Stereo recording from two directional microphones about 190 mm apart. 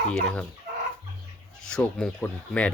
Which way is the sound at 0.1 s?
5° left (ahead or behind).